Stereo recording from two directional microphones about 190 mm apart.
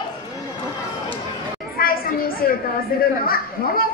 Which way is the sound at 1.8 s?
50° left (ahead or behind).